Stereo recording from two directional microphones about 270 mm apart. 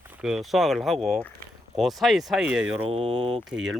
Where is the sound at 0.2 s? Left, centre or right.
Centre.